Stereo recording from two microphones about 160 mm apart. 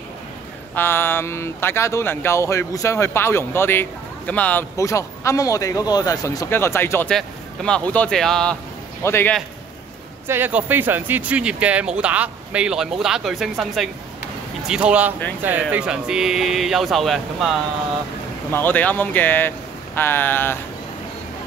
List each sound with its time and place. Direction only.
0.7 s speech: 15° left (ahead or behind)
9.0 s speech: 15° left (ahead or behind)
10.2 s speech: 15° right (ahead or behind)
18.5 s speech: 10° left (ahead or behind)